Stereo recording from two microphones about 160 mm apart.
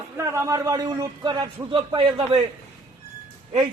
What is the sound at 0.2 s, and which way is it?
A man's voice, 15° right (ahead or behind).